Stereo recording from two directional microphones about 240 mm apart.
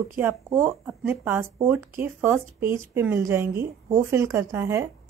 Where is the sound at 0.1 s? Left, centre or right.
Centre.